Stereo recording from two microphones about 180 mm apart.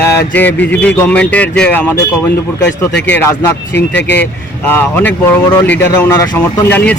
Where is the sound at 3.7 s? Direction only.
75° left (ahead or behind).